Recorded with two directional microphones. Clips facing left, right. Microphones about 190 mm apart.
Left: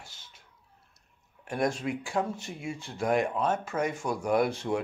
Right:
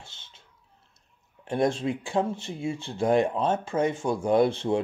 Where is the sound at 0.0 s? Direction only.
25° right (ahead or behind).